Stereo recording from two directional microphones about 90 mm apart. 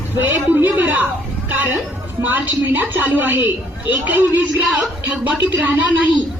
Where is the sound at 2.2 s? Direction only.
20° right (ahead or behind).